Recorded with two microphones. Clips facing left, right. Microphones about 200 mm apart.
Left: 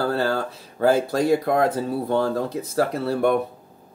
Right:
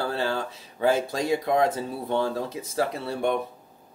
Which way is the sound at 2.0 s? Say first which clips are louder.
Left 2 dB; 40° left (ahead or behind).